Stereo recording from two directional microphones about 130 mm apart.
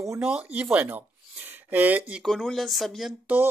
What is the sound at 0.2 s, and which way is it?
Speech, 10° right (ahead or behind).